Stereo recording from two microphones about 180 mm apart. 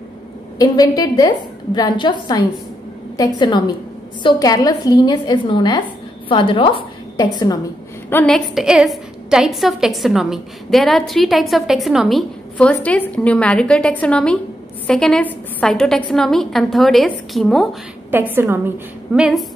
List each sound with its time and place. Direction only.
0.6 s a woman's voice: 20° left (ahead or behind)
8.1 s a woman's voice: 10° left (ahead or behind)
18.3 s a woman's voice: 10° right (ahead or behind)